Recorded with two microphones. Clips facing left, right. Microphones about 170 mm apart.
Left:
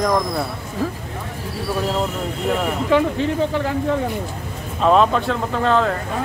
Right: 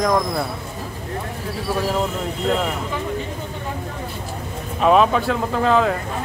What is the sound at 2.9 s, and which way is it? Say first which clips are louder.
Speech: left 11 dB; 80° left.